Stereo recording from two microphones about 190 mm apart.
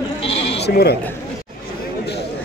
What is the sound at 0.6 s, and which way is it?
Speech, 55° left (ahead or behind).